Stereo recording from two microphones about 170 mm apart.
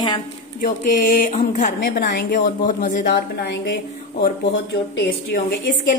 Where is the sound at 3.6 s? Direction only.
70° left (ahead or behind).